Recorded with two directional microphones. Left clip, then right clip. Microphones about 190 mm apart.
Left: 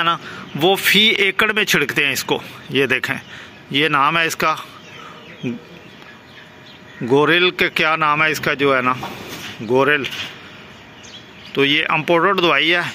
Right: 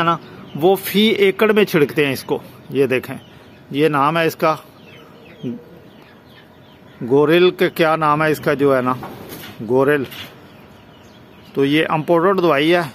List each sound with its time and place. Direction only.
0.6 s a man's voice: 15° right (ahead or behind)
7.1 s speech: 10° right (ahead or behind)
11.5 s speech: 25° right (ahead or behind)